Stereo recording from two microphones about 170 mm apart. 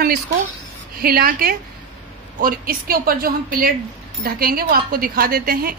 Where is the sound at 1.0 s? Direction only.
60° right (ahead or behind).